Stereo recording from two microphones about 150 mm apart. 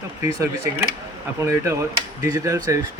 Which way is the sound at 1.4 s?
20° right (ahead or behind).